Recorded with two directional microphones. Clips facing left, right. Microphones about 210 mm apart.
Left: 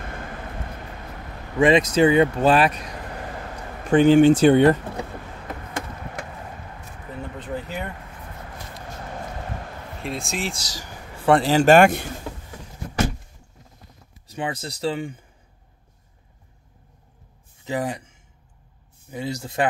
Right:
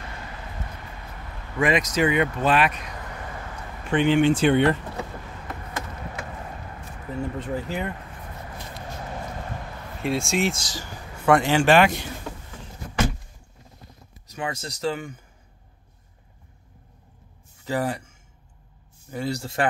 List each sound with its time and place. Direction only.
0.0 s vehicle: 50° left (ahead or behind)
1.6 s speech: 30° left (ahead or behind)
3.9 s speech: 40° left (ahead or behind)
7.3 s speech: centre (ahead or behind)
10.0 s speech: centre (ahead or behind)
10.5 s speech: 35° left (ahead or behind)
14.2 s speech: 30° left (ahead or behind)
17.6 s speech: 15° left (ahead or behind)